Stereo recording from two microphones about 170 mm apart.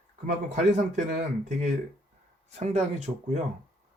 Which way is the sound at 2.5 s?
40° right (ahead or behind).